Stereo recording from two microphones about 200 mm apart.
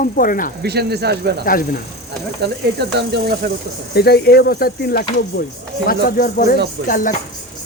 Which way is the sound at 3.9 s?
55° left (ahead or behind).